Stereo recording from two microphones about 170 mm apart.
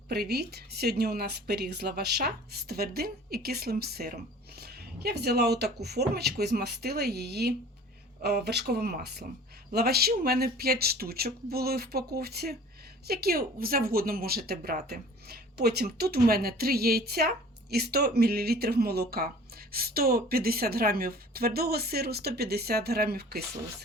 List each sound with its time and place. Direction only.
0.1 s speech: 70° right (ahead or behind)